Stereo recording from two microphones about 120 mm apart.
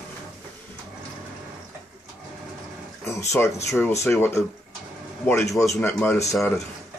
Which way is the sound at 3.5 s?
20° left (ahead or behind).